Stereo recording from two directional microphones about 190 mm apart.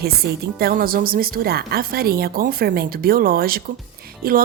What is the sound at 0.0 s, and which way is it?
A woman's voice, 55° right (ahead or behind).